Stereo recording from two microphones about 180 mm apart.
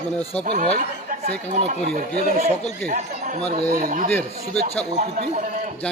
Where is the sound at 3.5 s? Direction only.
50° right (ahead or behind).